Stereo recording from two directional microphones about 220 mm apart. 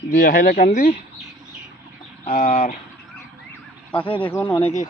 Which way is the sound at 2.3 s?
45° left (ahead or behind).